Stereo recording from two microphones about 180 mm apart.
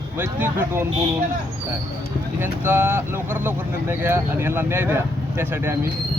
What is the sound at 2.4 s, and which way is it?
Speech, 10° right (ahead or behind).